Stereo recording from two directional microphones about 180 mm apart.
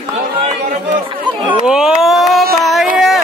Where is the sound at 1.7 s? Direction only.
5° right (ahead or behind).